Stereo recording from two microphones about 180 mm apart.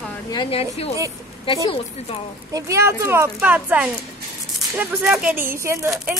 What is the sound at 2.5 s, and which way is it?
Speech, 15° right (ahead or behind).